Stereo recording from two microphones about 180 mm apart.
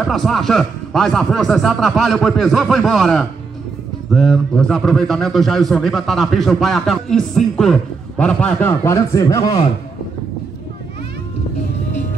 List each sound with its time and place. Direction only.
0.0 s a man's voice: centre (ahead or behind); by 9.6 s 20° left (ahead or behind)